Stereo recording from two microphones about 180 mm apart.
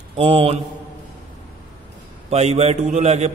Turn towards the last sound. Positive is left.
turn(degrees=-40)  # may be behind; listen again after turning